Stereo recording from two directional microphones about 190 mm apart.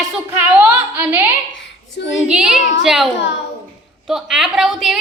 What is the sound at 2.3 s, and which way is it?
A woman's voice, 5° right (ahead or behind).